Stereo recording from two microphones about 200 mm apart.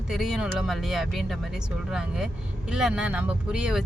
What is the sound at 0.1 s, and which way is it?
Speech, centre (ahead or behind).